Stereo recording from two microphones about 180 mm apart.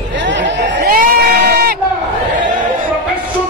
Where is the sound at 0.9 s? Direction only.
55° right (ahead or behind).